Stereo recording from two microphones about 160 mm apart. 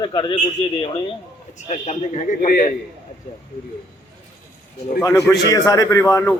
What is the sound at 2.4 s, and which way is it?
Speech, 60° left (ahead or behind).